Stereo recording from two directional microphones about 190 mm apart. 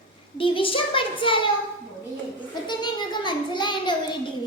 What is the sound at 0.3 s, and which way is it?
A child's voice, 25° left (ahead or behind).